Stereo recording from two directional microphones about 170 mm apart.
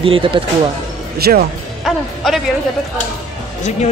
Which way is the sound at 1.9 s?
Centre (ahead or behind).